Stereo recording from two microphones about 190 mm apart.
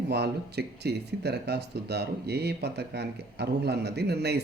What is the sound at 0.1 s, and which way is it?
Speech, 60° right (ahead or behind).